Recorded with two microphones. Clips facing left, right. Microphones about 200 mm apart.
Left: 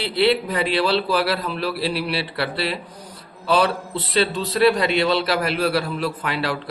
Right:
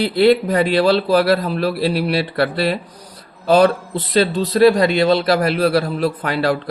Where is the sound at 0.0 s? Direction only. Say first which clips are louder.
Right 6 dB; 45° right (ahead or behind).